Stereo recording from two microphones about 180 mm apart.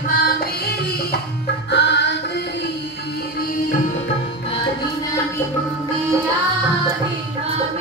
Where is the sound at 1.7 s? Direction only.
75° left (ahead or behind).